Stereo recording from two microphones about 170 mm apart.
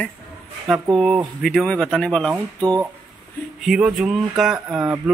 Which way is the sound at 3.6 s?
5° right (ahead or behind).